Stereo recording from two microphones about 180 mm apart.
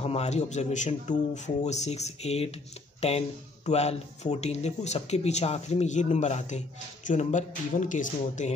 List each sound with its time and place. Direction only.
0.0 s speech: 35° left (ahead or behind)